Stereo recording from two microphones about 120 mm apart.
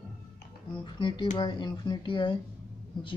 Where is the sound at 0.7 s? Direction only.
40° left (ahead or behind).